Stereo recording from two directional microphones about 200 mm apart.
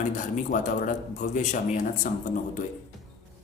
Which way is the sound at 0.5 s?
40° left (ahead or behind).